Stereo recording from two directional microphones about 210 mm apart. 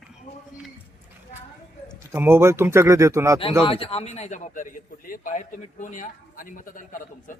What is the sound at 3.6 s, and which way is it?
A man's voice, 25° left (ahead or behind).